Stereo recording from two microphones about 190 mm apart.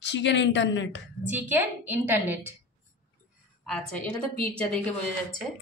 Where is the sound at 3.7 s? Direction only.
5° left (ahead or behind).